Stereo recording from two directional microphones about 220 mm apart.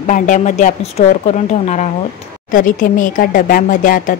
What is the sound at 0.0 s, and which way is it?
Speech, 35° left (ahead or behind).